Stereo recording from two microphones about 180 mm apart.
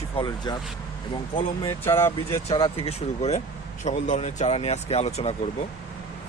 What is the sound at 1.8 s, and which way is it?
Speech, 15° left (ahead or behind).